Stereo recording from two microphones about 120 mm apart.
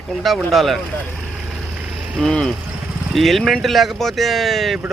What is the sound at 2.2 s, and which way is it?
Speech, 5° left (ahead or behind).